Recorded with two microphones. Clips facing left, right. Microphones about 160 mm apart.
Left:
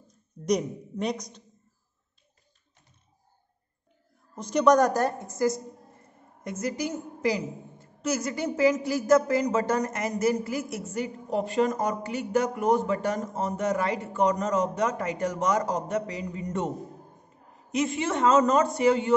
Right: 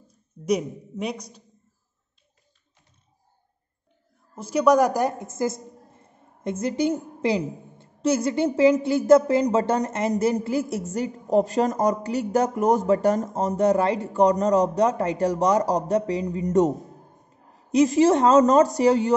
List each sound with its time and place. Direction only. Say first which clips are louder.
0.5 s a man's voice: right 2 dB; 5° right (ahead or behind)
4.4 s a woman's voice: right 2 dB; 5° right (ahead or behind); by 19.1 s 35° right (ahead or behind)